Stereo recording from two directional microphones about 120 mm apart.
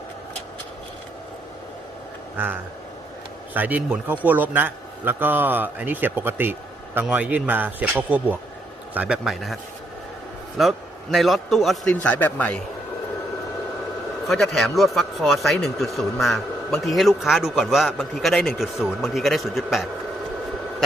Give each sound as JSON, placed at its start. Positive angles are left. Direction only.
{"t": 3.5, "sound": "a man's voice", "side_deg": -15}
{"t": 10.6, "sound": "a man's voice", "side_deg": 0}
{"t": 11.9, "sound": "a man's voice", "side_deg": 10}
{"t": 14.3, "sound": "a man's voice", "side_deg": 0}